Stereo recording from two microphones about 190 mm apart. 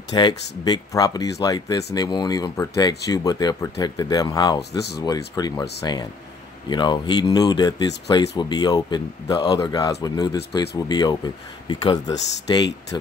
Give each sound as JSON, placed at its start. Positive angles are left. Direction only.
{"t": 0.1, "sound": "speech", "side_deg": 20}
{"t": 4.6, "sound": "speech", "side_deg": 60}
{"t": 5.0, "sound": "speech", "side_deg": 20}